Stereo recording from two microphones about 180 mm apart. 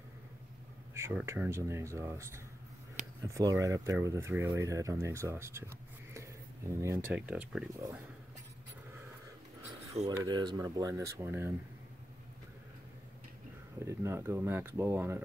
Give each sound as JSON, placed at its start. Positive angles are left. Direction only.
{"t": 0.9, "sound": "speech", "side_deg": -15}
{"t": 10.0, "sound": "speech", "side_deg": -25}
{"t": 13.8, "sound": "speech", "side_deg": -15}